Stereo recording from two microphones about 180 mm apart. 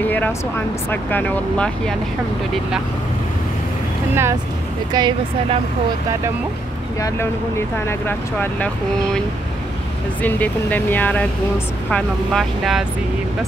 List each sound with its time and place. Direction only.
0.0 s speech: 10° left (ahead or behind)
4.1 s speech: 15° right (ahead or behind)
4.9 s speech: 25° right (ahead or behind)
7.0 s speech: 15° left (ahead or behind)
10.2 s speech: 10° left (ahead or behind)